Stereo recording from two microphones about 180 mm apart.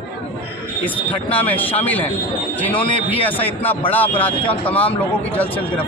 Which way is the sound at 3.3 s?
10° left (ahead or behind).